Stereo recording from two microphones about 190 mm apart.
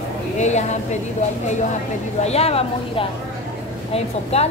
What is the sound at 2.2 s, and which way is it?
Speech, 35° left (ahead or behind).